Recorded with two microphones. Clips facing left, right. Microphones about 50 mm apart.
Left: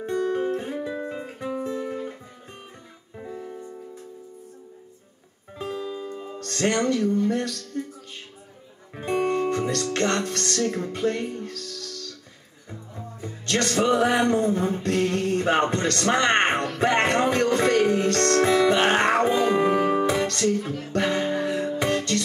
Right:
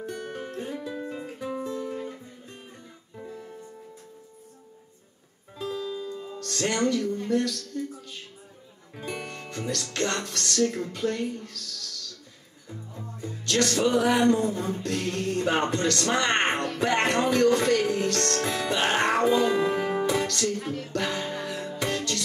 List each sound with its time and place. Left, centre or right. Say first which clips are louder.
0.0 s music: left 10 dB; left
3.2 s music: left 4 dB; left
5.6 s music: left 1 dB; left
7.2 s a sound: even; left
8.9 s music: left 12 dB; left